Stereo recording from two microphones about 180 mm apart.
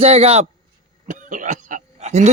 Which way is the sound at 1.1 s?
45° right (ahead or behind).